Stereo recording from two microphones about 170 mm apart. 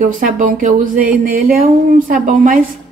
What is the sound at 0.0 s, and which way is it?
A woman's voice, 50° right (ahead or behind).